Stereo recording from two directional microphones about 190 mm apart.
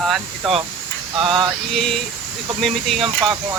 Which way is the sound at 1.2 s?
25° right (ahead or behind).